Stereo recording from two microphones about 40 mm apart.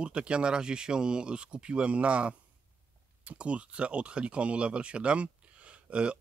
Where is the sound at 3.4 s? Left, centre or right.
Right.